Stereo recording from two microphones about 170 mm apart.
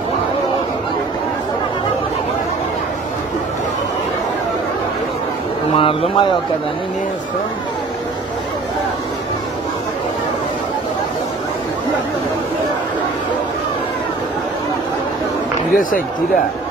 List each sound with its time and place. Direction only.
5.7 s speech: 30° left (ahead or behind)
15.7 s speech: 55° left (ahead or behind)